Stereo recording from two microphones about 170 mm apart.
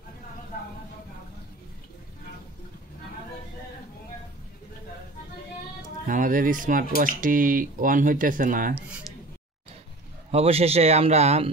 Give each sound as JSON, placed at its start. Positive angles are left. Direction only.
{"t": 5.8, "sound": "speech", "side_deg": -50}
{"t": 10.3, "sound": "speech", "side_deg": -35}